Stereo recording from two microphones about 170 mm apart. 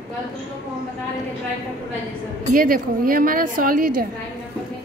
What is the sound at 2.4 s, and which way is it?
A woman's voice, 55° right (ahead or behind).